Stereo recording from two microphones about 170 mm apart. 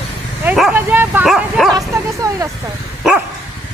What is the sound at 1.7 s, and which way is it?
Bow-wow, 20° right (ahead or behind).